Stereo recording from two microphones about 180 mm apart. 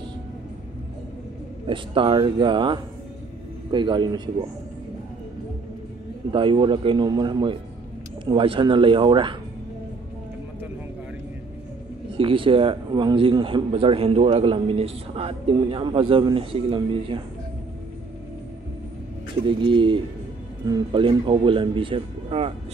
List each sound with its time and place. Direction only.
1.7 s a man's voice: 30° right (ahead or behind)
6.3 s a man's voice: 25° right (ahead or behind)
12.2 s a man's voice: 30° right (ahead or behind)
19.4 s a man's voice: 30° right (ahead or behind)